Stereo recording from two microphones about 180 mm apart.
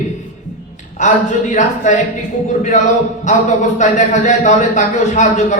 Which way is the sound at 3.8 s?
40° left (ahead or behind).